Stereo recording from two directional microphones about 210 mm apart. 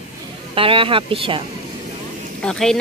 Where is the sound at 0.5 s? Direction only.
25° right (ahead or behind).